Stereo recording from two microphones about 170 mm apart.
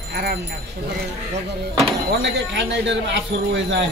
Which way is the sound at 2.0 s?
90° right.